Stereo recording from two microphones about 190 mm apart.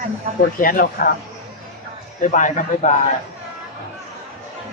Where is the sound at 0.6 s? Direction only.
50° left (ahead or behind).